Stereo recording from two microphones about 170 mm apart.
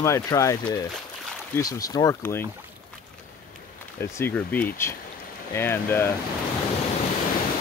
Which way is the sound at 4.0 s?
15° left (ahead or behind).